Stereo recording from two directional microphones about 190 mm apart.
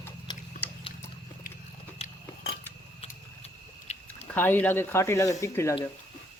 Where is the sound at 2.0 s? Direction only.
30° left (ahead or behind).